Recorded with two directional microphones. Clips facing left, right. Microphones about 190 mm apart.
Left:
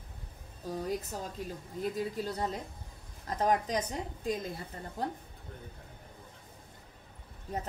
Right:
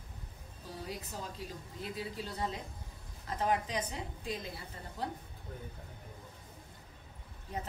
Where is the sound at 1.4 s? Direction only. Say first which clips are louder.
Left 7 dB; 50° left (ahead or behind).